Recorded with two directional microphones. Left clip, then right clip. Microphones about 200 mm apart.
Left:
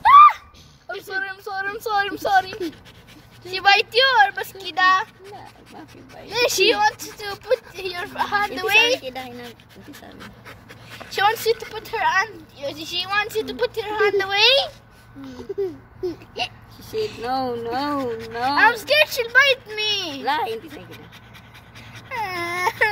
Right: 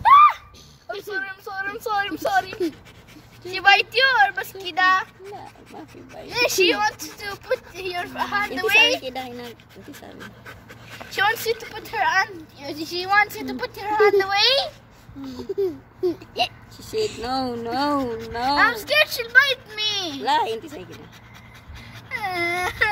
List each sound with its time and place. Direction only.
0.0 s a sound: 40° left (ahead or behind)
3.5 s a woman's voice: 45° left (ahead or behind)
6.3 s speech: 35° left (ahead or behind)
10.1 s pant: centre (ahead or behind)
11.1 s speech: 40° left (ahead or behind)
16.0 s speech: 50° right (ahead or behind)
18.6 s a child's voice: 25° left (ahead or behind)
20.2 s a child's voice: 40° right (ahead or behind)
22.1 s baby cry: 25° left (ahead or behind)